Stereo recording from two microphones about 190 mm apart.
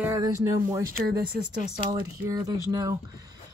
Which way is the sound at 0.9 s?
50° right (ahead or behind).